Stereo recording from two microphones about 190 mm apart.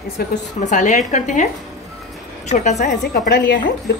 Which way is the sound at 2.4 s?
35° left (ahead or behind).